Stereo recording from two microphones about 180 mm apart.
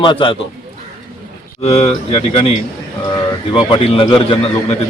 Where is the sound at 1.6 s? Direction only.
35° left (ahead or behind).